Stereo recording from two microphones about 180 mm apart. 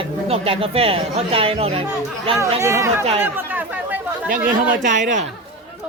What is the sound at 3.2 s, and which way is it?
Chatter, 10° right (ahead or behind).